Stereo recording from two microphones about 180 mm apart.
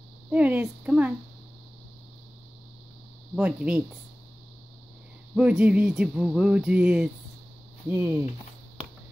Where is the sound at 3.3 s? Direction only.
5° right (ahead or behind).